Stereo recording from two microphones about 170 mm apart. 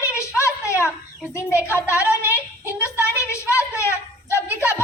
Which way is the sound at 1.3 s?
15° left (ahead or behind).